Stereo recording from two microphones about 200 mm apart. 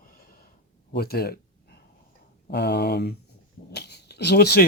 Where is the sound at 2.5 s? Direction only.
55° left (ahead or behind).